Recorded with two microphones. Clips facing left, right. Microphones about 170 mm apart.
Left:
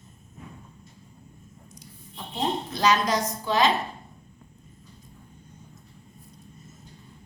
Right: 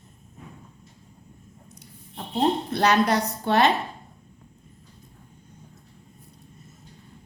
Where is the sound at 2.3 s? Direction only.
60° right (ahead or behind).